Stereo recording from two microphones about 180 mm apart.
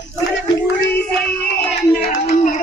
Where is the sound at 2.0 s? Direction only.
65° left (ahead or behind).